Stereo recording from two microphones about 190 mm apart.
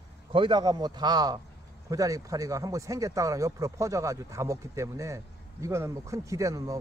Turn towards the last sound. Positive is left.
turn(degrees=-15)  # may be behind; listen again after turning